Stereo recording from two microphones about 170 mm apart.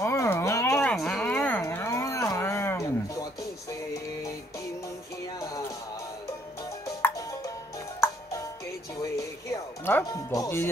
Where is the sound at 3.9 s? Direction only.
20° left (ahead or behind).